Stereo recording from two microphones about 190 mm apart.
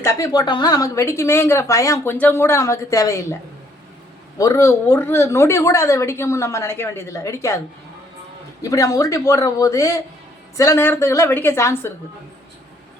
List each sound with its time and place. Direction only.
0.0 s speech: 15° left (ahead or behind)
4.4 s speech: 15° left (ahead or behind)
8.7 s speech: 15° left (ahead or behind)